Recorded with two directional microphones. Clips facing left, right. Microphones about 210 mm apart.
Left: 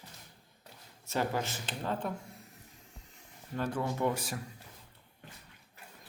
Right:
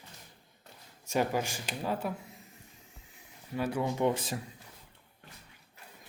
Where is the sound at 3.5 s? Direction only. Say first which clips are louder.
Right 2 dB; 10° right (ahead or behind).